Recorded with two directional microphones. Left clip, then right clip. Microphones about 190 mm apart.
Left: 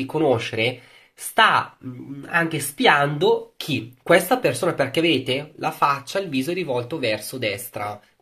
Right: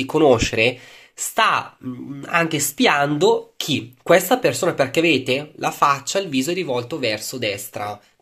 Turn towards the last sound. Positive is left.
turn(degrees=-15)  # may be behind; listen again after turning